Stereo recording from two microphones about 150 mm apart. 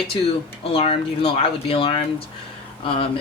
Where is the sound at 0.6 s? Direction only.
40° left (ahead or behind).